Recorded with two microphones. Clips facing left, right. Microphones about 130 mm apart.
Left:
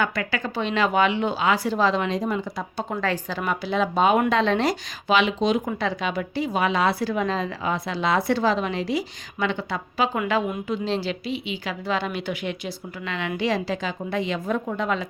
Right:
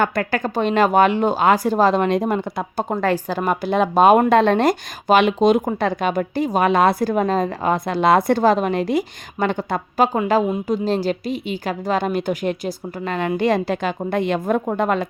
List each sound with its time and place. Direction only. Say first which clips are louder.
0.0 s a woman's voice: right 6 dB; 50° right (ahead or behind)